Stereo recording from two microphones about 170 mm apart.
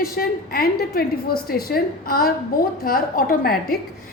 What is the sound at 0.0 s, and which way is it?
A woman's voice, 60° left (ahead or behind).